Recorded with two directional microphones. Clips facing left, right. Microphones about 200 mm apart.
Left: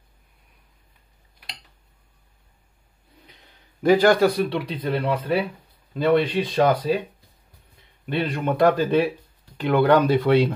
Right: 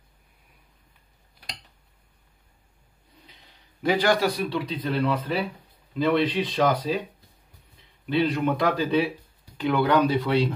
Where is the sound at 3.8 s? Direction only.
50° left (ahead or behind).